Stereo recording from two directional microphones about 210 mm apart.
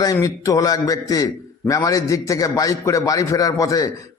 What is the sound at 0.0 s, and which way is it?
A man's voice, 15° left (ahead or behind).